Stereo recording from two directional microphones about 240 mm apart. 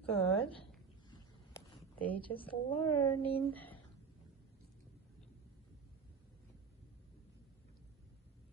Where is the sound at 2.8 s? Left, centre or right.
Left.